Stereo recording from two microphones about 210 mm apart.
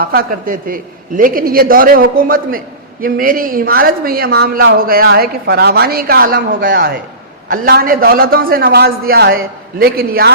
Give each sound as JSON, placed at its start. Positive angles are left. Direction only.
{"t": 0.0, "sound": "a man's voice", "side_deg": -45}